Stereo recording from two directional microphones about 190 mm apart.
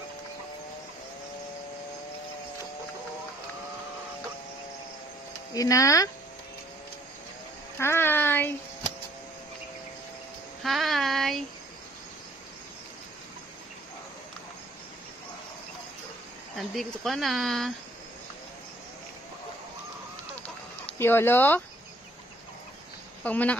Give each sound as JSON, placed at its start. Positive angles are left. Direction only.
{"t": 5.5, "sound": "speech", "side_deg": 15}
{"t": 7.8, "sound": "a sound", "side_deg": 10}
{"t": 10.6, "sound": "child singing", "side_deg": 0}
{"t": 16.5, "sound": "speech", "side_deg": 0}
{"t": 21.0, "sound": "speech", "side_deg": 10}
{"t": 23.2, "sound": "speech", "side_deg": 10}